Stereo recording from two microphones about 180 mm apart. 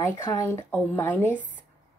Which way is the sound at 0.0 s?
15° left (ahead or behind).